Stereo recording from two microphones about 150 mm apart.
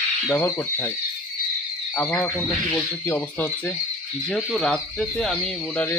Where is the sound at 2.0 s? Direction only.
10° left (ahead or behind).